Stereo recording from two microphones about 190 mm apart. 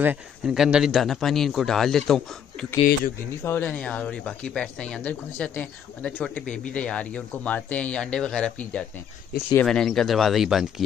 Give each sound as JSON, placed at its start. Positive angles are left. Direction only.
{"t": 0.0, "sound": "speech", "side_deg": -5}
{"t": 3.4, "sound": "speech", "side_deg": 10}